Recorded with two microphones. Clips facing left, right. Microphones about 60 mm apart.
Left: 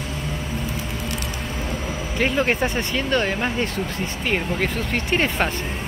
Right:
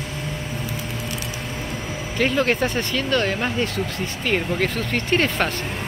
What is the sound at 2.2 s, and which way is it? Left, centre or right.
Speech, centre.